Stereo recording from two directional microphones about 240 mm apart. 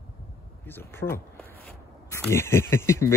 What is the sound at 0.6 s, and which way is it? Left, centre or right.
Speech, centre.